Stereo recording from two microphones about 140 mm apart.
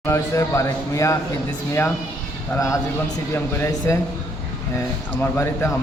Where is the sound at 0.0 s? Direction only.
20° left (ahead or behind).